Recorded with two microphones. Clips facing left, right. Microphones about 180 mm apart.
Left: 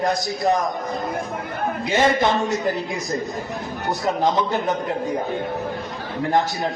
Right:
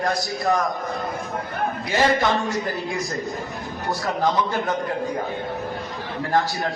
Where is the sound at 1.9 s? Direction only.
20° left (ahead or behind).